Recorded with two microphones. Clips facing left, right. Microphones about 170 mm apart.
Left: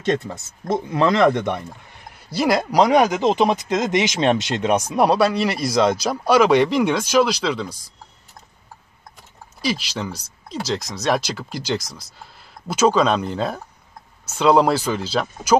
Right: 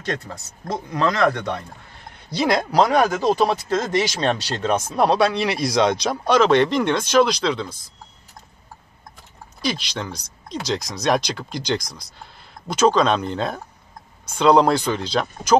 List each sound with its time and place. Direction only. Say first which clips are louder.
0.0 s speech: left 6 dB; 25° left (ahead or behind)
2.2 s speech: left 1 dB; 5° left (ahead or behind)
2.8 s speech: left 2 dB; 15° left (ahead or behind)
9.6 s speech: left 2 dB; 5° left (ahead or behind)